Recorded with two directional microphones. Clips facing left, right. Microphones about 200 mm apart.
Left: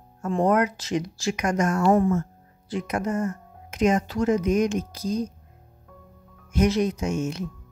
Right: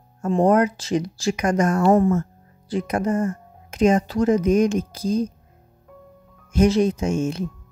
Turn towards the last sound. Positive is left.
turn(degrees=-30)  # may be behind; listen again after turning